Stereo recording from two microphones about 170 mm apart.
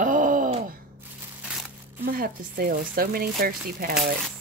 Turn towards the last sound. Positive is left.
turn(degrees=-60)  # may be behind; listen again after turning